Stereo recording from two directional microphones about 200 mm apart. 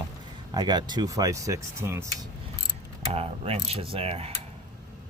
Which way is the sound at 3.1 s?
30° right (ahead or behind).